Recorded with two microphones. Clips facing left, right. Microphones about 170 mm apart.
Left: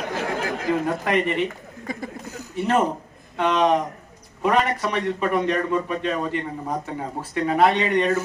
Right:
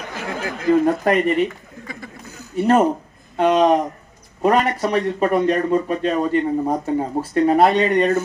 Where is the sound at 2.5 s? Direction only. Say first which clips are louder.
Right 6 dB; 35° right (ahead or behind).